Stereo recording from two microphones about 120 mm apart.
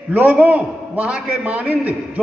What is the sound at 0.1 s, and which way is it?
A man's voice, 15° right (ahead or behind).